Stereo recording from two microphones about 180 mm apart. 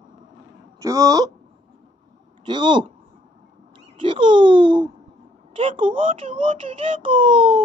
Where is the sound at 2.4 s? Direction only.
25° right (ahead or behind).